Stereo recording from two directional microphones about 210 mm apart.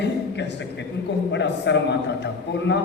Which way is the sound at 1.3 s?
55° left (ahead or behind).